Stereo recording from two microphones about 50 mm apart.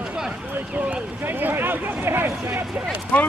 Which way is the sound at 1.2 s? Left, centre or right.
Right.